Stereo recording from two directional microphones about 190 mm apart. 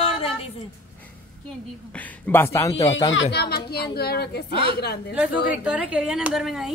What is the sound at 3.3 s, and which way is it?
A woman's voice, 55° left (ahead or behind).